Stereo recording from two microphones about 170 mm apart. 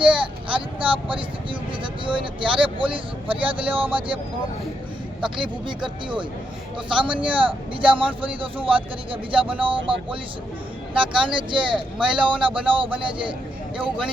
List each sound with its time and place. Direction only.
0.0 s speech: 30° right (ahead or behind)
5.2 s speech: 30° right (ahead or behind)